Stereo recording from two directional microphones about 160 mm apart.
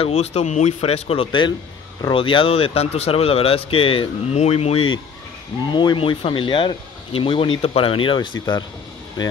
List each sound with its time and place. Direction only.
0.0 s speech: 40° left (ahead or behind)